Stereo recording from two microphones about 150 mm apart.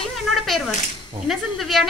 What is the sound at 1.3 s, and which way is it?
Speech, centre (ahead or behind).